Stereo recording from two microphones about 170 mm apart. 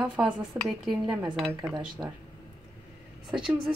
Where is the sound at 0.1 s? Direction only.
5° right (ahead or behind).